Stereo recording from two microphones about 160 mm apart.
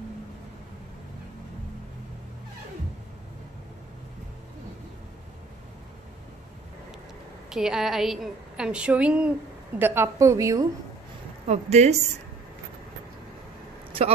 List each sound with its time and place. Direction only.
7.4 s a woman's voice: 5° right (ahead or behind); by 10.7 s 20° right (ahead or behind)
11.4 s a woman's voice: 45° right (ahead or behind)